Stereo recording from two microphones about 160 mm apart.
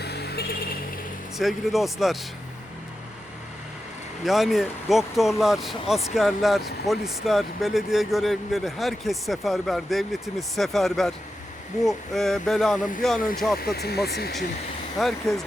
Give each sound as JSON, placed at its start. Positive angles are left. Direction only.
{"t": 0.0, "sound": "a sound", "side_deg": 90}
{"t": 1.4, "sound": "speech", "side_deg": 0}
{"t": 4.2, "sound": "speech", "side_deg": 0}
{"t": 13.6, "sound": "speech", "side_deg": 75}
{"t": 14.9, "sound": "speech", "side_deg": 0}